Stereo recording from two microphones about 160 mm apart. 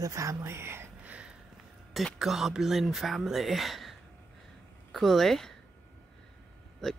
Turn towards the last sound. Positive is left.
turn(degrees=0)  # may be behind; listen again after turning